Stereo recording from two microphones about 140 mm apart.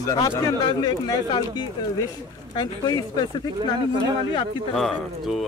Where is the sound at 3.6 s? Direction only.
35° right (ahead or behind).